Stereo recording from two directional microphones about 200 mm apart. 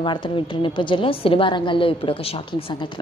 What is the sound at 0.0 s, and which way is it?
A woman's voice, 25° left (ahead or behind).